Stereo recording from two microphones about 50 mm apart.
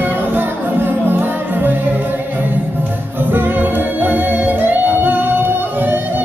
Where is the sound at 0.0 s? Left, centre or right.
Right.